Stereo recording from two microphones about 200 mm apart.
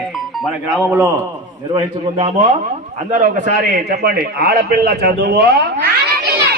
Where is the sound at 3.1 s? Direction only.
35° right (ahead or behind).